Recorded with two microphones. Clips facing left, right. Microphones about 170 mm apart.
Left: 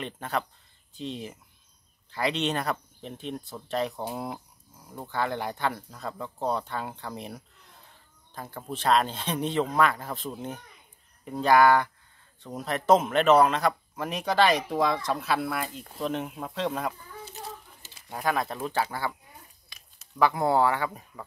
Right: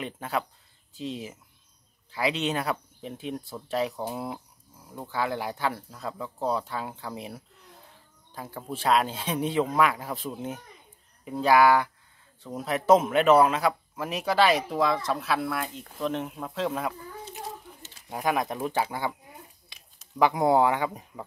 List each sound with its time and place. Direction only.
0.0 s speech: 5° right (ahead or behind)
18.0 s speech: 15° right (ahead or behind)